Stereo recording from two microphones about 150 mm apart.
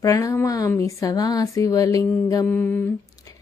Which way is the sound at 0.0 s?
20° left (ahead or behind).